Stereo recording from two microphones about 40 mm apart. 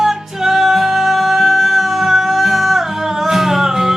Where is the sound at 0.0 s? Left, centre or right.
Centre.